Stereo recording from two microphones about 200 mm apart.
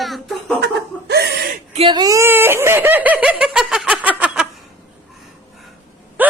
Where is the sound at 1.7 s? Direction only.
25° right (ahead or behind); by 4.5 s 5° right (ahead or behind).